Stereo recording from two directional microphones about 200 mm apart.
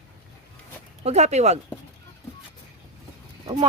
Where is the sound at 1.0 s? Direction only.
35° right (ahead or behind).